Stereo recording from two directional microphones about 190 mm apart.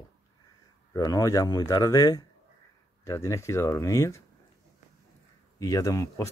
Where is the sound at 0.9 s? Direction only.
20° left (ahead or behind).